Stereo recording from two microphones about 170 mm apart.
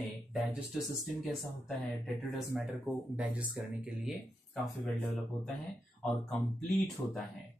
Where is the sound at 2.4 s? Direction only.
5° right (ahead or behind).